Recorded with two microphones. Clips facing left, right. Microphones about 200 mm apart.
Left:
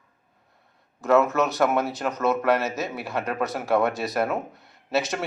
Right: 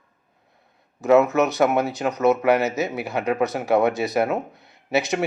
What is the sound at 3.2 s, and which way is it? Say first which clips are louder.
A man's voice: right 6 dB; 15° right (ahead or behind).